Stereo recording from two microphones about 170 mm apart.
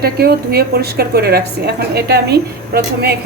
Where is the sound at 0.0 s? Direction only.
65° right (ahead or behind).